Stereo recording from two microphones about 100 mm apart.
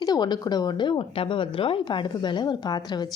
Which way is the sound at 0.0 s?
45° left (ahead or behind).